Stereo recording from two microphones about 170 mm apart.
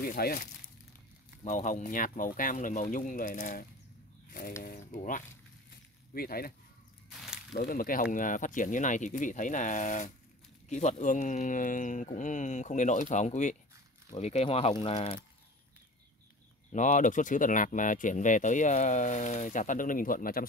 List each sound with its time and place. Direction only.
0.0 s speech: 65° left (ahead or behind)
1.4 s speech: 45° left (ahead or behind)
6.1 s speech: 60° left (ahead or behind)
7.1 s a sound: centre (ahead or behind)
7.5 s speech: 55° left (ahead or behind); by 15.1 s 35° left (ahead or behind)
16.7 s speech: 45° left (ahead or behind)